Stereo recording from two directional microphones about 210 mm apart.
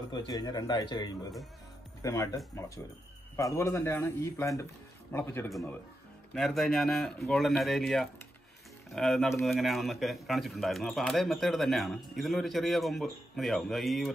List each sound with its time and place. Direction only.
0.1 s speech: 20° left (ahead or behind)
2.0 s music: 15° left (ahead or behind)
3.3 s a man's voice: 15° left (ahead or behind)
5.5 s a man's voice: centre (ahead or behind)